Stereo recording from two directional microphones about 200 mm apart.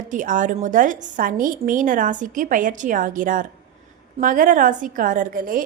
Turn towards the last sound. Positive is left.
turn(degrees=-45)  # may be behind; listen again after turning